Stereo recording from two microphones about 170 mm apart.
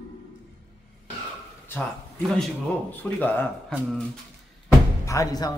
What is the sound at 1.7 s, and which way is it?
Speech, 10° left (ahead or behind).